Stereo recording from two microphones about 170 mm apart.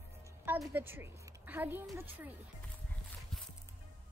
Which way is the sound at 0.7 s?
10° right (ahead or behind).